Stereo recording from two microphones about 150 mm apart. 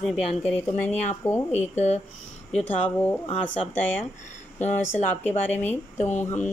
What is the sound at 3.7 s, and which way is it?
Speech, 10° left (ahead or behind).